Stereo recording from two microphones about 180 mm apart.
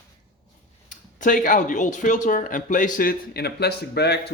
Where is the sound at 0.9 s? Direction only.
45° left (ahead or behind); by 4.3 s 65° left (ahead or behind).